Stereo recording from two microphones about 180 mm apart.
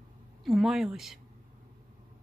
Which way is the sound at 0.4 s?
Centre (ahead or behind).